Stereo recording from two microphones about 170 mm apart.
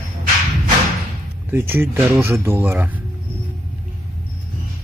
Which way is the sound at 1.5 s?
15° right (ahead or behind).